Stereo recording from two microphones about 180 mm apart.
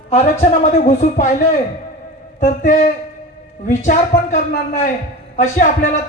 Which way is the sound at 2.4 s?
40° left (ahead or behind).